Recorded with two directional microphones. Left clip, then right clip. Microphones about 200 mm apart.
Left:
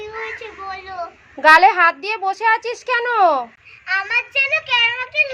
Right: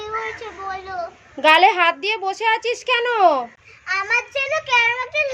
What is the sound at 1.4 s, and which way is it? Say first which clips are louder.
A child's voice: left 3 dB; 5° right (ahead or behind).